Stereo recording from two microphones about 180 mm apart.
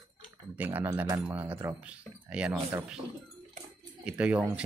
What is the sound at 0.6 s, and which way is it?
Speech, 10° right (ahead or behind).